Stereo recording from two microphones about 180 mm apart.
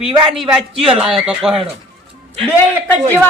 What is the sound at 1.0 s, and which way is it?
Speech, 5° right (ahead or behind).